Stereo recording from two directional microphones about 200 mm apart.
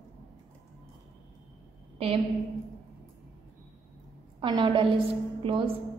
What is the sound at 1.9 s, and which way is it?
Speech, 30° right (ahead or behind).